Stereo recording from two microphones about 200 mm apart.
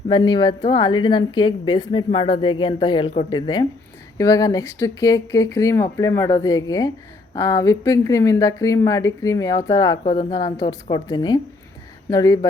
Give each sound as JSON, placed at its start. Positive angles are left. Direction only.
{"t": 0.1, "sound": "a woman's voice", "side_deg": 20}